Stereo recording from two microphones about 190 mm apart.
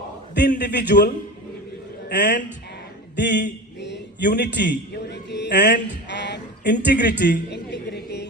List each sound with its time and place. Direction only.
0.6 s a man's voice: 60° left (ahead or behind)
2.1 s speech: 45° left (ahead or behind)
3.2 s a man's voice: 65° left (ahead or behind)
3.8 s a sound: 65° left (ahead or behind)
4.4 s a man's voice: 65° left (ahead or behind)
5.5 s speech: 45° left (ahead or behind)
5.9 s a sound: 65° left (ahead or behind)